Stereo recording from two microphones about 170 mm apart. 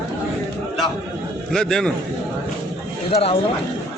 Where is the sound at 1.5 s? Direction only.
5° left (ahead or behind).